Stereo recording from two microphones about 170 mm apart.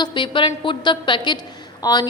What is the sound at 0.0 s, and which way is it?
A woman's voice, 30° left (ahead or behind).